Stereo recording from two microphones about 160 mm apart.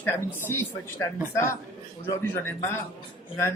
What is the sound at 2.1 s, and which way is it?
Speech, 15° left (ahead or behind).